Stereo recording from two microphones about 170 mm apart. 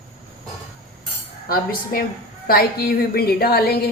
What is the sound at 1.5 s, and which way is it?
Speech, 60° left (ahead or behind).